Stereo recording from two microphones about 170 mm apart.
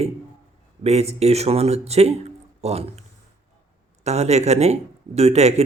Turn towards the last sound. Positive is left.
turn(degrees=-40)  # may be behind; listen again after turning